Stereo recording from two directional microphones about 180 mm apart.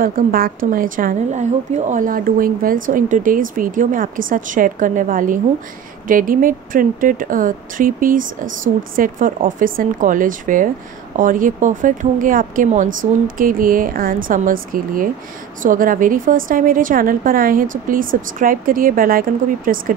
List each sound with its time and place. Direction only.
0.0 s a woman's voice: 55° right (ahead or behind)